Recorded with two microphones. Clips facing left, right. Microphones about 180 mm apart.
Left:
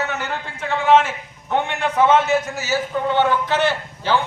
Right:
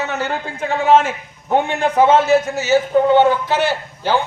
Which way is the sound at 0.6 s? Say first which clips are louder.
Right 2 dB; 40° right (ahead or behind).